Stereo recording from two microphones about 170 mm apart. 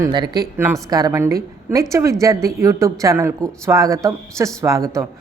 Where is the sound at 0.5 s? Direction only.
15° right (ahead or behind).